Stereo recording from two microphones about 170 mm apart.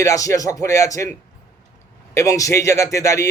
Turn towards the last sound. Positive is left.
turn(degrees=20)  # may be behind; listen again after turning